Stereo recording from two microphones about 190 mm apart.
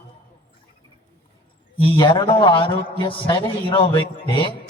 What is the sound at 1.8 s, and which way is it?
A man's voice, 25° left (ahead or behind).